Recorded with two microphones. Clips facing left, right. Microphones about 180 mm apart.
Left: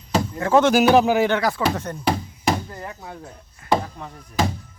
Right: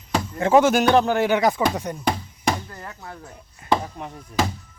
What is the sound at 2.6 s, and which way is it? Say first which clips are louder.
Speech: left 3 dB; 15° left (ahead or behind).